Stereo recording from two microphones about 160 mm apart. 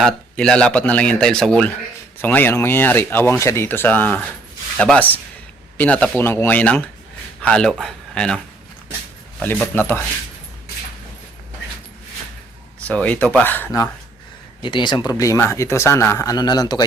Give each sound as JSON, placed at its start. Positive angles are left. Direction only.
{"t": 0.0, "sound": "speech", "side_deg": 5}
{"t": 9.4, "sound": "speech", "side_deg": 10}
{"t": 12.8, "sound": "speech", "side_deg": 10}
{"t": 14.6, "sound": "speech", "side_deg": 30}